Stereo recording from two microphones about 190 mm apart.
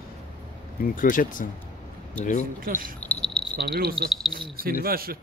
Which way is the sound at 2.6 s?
50° right (ahead or behind).